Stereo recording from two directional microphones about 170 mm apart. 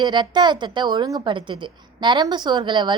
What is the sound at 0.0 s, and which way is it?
A woman's voice, 25° right (ahead or behind).